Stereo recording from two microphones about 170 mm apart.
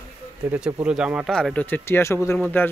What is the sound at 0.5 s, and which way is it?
Speech, 5° right (ahead or behind).